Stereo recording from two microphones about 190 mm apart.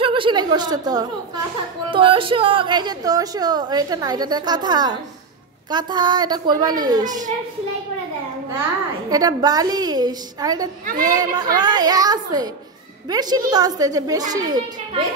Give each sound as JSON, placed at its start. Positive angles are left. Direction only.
{"t": 0.0, "sound": "a woman's voice", "side_deg": -25}
{"t": 9.1, "sound": "a woman's voice", "side_deg": -20}